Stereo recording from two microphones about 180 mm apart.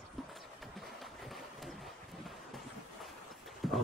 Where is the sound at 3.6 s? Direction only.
Centre (ahead or behind).